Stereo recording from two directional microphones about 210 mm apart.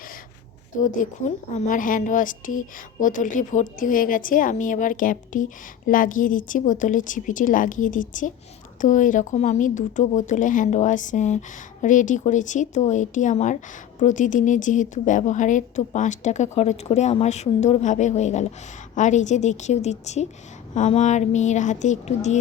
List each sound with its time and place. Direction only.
0.8 s a woman's voice: 35° left (ahead or behind)